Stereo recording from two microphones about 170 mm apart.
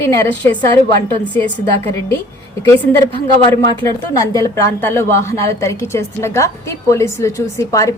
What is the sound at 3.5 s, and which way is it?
A woman's voice, 20° left (ahead or behind).